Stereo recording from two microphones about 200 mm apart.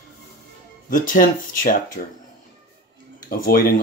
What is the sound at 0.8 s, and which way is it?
Speech, 40° left (ahead or behind).